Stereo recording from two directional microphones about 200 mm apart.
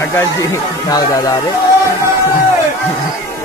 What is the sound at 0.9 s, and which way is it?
Speech, 15° left (ahead or behind).